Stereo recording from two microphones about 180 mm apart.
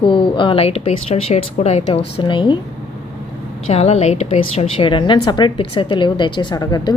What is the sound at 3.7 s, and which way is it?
A woman's voice, 35° left (ahead or behind).